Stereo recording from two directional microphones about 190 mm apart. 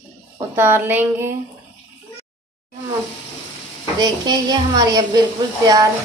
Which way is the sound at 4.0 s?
20° right (ahead or behind).